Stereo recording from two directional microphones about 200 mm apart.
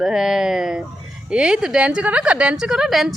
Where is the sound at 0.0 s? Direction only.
5° right (ahead or behind).